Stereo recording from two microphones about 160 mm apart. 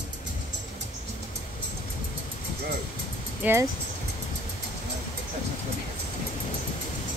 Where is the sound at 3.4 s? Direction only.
10° right (ahead or behind).